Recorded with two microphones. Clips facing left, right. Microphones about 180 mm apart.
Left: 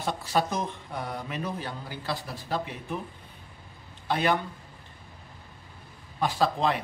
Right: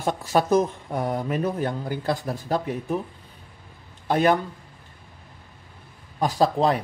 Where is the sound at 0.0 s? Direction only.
45° right (ahead or behind).